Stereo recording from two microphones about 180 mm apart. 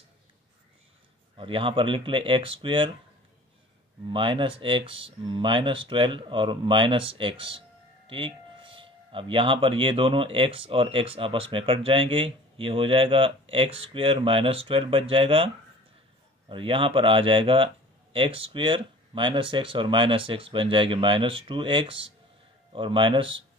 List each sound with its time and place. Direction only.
1.3 s speech: 30° right (ahead or behind)
4.1 s speech: 25° right (ahead or behind)